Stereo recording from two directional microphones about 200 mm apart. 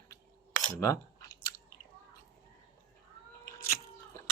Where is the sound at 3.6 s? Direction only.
15° left (ahead or behind).